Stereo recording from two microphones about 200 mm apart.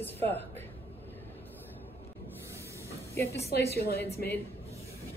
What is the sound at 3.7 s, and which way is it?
Speech, 50° left (ahead or behind).